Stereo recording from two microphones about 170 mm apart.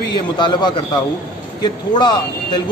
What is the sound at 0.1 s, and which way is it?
Speech, 25° left (ahead or behind).